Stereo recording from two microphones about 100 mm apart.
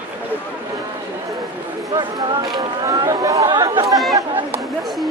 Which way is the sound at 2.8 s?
35° right (ahead or behind).